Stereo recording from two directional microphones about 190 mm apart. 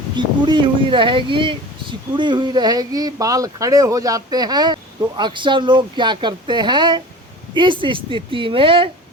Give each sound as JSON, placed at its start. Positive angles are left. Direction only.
{"t": 0.2, "sound": "speech", "side_deg": -25}